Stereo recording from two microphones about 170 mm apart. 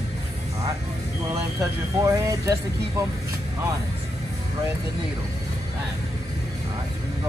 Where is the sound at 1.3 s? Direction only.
15° right (ahead or behind).